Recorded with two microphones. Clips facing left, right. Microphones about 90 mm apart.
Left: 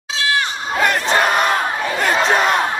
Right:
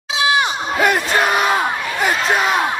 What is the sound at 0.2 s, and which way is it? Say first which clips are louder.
Crowd: right 3 dB; 15° right (ahead or behind).